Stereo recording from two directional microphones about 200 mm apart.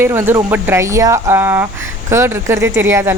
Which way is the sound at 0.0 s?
10° right (ahead or behind).